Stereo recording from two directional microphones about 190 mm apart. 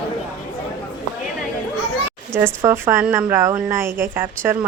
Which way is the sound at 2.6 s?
10° right (ahead or behind).